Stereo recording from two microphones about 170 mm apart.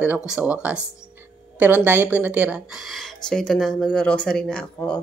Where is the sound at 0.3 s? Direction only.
10° right (ahead or behind).